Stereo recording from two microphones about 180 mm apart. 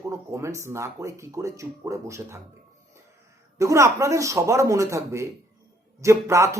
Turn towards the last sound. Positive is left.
turn(degrees=-15)  # may be behind; listen again after turning